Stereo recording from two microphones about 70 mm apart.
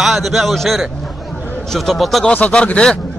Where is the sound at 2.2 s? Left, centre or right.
Centre.